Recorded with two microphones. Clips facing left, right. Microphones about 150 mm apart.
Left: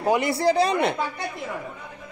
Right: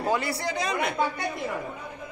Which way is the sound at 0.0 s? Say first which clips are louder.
Left 5 dB; 20° left (ahead or behind).